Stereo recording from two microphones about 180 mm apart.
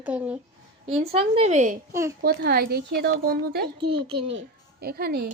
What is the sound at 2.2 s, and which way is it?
Speech, 65° right (ahead or behind).